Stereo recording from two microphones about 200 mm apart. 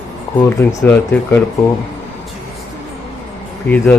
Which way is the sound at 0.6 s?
15° left (ahead or behind).